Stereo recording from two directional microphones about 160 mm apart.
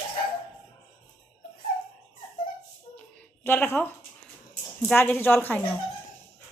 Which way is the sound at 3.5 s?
10° left (ahead or behind).